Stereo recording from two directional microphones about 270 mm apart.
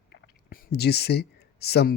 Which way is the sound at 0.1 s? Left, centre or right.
Left.